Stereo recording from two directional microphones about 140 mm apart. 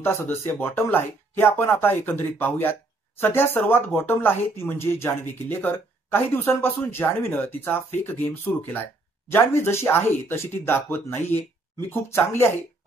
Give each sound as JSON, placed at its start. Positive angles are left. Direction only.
{"t": 0.0, "sound": "speech", "side_deg": 15}